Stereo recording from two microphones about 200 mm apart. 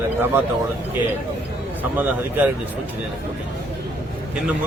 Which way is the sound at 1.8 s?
10° right (ahead or behind).